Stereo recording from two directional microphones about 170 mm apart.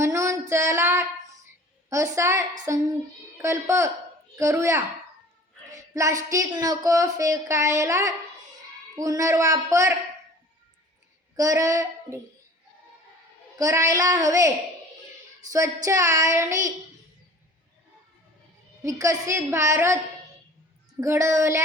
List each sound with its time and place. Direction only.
0.0 s female singing: 15° right (ahead or behind)
1.9 s a woman's voice: 15° right (ahead or behind)
11.3 s speech: 20° right (ahead or behind)
13.6 s speech: 20° right (ahead or behind)
15.5 s speech: 20° right (ahead or behind)
18.8 s a woman's voice: 20° right (ahead or behind)
21.0 s a woman's voice: 15° right (ahead or behind)